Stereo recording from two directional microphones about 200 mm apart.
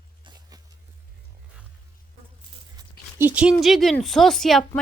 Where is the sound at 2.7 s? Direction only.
10° right (ahead or behind).